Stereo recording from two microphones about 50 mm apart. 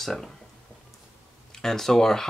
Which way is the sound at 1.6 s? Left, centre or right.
Centre.